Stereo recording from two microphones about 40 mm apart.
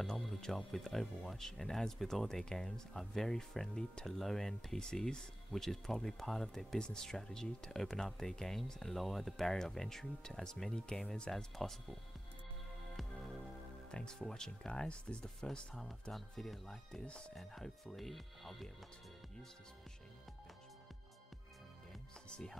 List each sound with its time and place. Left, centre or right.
0.4 s speech: centre
5.5 s speech: centre
13.9 s speech: left
14.7 s speech: left
15.7 s speech: centre